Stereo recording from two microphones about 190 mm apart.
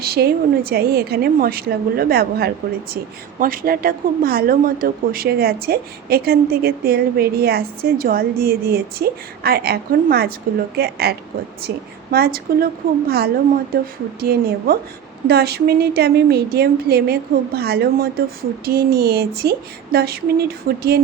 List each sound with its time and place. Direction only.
0.0 s a woman's voice: 55° right (ahead or behind)